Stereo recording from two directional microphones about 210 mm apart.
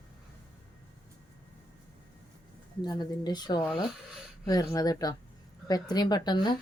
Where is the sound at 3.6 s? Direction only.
5° right (ahead or behind).